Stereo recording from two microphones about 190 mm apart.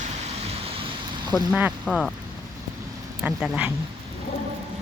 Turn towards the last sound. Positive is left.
turn(degrees=-5)  # may be behind; listen again after turning